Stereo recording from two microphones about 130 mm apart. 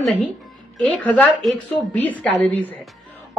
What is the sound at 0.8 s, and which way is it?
A woman's voice, 5° left (ahead or behind).